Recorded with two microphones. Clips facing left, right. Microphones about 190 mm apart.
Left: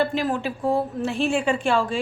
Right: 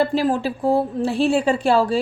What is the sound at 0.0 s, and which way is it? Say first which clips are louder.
Speech: right 4 dB; 35° right (ahead or behind).